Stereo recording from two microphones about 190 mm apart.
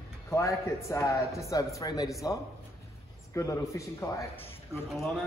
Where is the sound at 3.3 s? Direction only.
15° left (ahead or behind).